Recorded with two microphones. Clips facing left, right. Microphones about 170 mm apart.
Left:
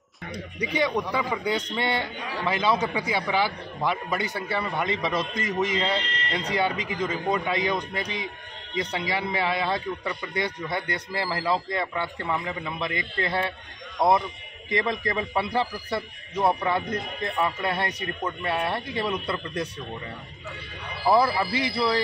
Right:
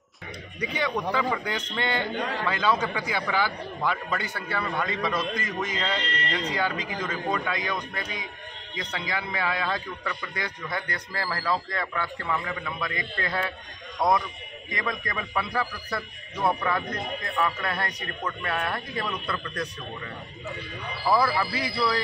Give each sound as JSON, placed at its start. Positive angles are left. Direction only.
{"t": 0.6, "sound": "a man's voice", "side_deg": 15}
{"t": 21.1, "sound": "a man's voice", "side_deg": 25}